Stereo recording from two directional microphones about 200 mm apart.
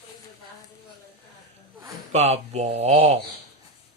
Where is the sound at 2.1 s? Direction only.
35° right (ahead or behind).